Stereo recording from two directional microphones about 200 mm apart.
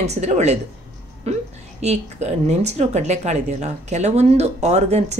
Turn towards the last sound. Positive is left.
turn(degrees=-35)  # may be behind; listen again after turning